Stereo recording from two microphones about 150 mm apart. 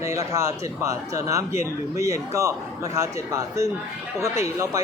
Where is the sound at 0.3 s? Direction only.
20° right (ahead or behind).